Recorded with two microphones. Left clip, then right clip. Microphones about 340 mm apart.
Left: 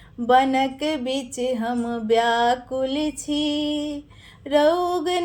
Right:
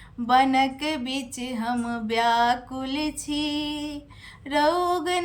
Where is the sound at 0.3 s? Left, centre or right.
Centre.